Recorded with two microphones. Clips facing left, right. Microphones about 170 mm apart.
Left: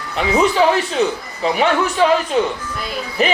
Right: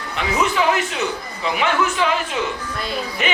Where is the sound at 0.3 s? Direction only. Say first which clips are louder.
Left 5 dB; 35° left (ahead or behind).